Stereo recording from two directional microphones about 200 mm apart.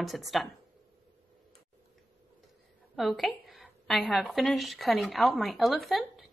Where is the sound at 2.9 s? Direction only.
Centre (ahead or behind).